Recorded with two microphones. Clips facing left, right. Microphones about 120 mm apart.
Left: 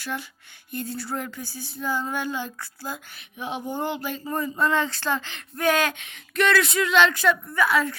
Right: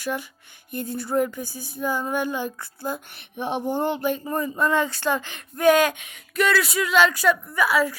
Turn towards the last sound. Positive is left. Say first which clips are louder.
# right 1 dB
turn(degrees=-10)  # may be behind; listen again after turning